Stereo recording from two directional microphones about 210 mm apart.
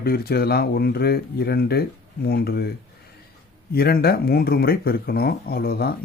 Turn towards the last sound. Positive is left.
turn(degrees=45)  # may be behind; listen again after turning